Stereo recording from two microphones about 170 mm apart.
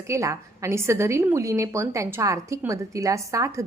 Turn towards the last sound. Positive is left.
turn(degrees=-20)  # may be behind; listen again after turning